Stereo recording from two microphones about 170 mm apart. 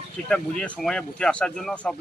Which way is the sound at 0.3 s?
5° left (ahead or behind).